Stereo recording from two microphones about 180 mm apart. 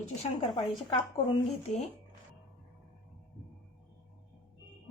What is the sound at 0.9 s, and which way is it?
Speech, 35° left (ahead or behind).